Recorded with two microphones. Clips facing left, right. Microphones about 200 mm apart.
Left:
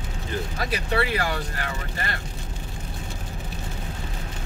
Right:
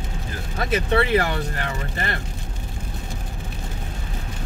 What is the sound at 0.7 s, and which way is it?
Speech, 25° right (ahead or behind).